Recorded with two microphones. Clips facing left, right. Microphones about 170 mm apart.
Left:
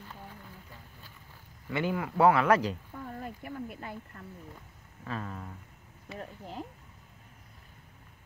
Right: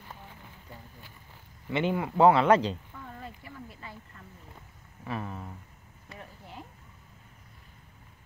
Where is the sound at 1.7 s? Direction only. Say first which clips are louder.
Right 3 dB; 20° right (ahead or behind).